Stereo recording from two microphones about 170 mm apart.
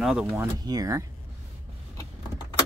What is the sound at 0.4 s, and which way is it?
Speech, 20° right (ahead or behind).